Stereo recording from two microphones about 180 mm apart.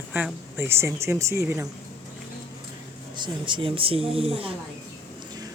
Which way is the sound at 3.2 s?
25° right (ahead or behind).